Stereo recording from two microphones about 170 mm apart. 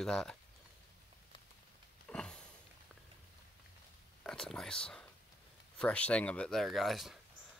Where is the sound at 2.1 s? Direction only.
5° left (ahead or behind).